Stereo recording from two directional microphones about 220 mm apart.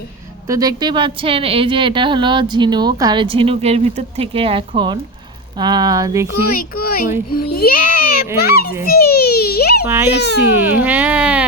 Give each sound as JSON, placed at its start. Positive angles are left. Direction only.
{"t": 0.4, "sound": "speech", "side_deg": -15}
{"t": 6.6, "sound": "a child's voice", "side_deg": 40}
{"t": 8.9, "sound": "baby cry", "side_deg": 45}
{"t": 9.8, "sound": "speech", "side_deg": -10}
{"t": 10.1, "sound": "a child's voice", "side_deg": 50}
{"t": 10.6, "sound": "speech", "side_deg": -10}